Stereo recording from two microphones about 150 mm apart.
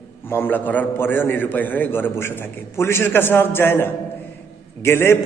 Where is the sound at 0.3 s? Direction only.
15° left (ahead or behind).